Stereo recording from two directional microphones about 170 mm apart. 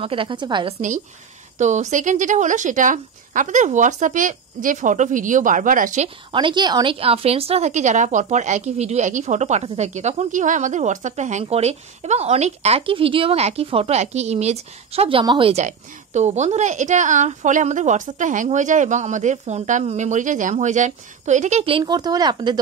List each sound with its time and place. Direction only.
0.0 s a woman's voice: 30° right (ahead or behind)
0.7 s a woman's voice: 45° right (ahead or behind)
6.0 s a woman's voice: 30° right (ahead or behind)
15.6 s a woman's voice: 45° right (ahead or behind); by 22.6 s 25° right (ahead or behind)